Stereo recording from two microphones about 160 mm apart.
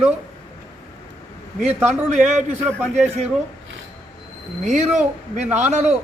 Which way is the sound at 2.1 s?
45° right (ahead or behind).